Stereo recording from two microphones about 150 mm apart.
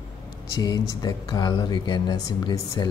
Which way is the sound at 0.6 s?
25° left (ahead or behind).